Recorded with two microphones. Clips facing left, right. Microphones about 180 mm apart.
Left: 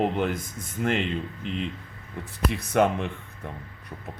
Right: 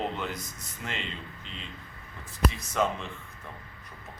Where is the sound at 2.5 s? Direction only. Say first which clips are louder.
Left 7 dB; 60° left (ahead or behind).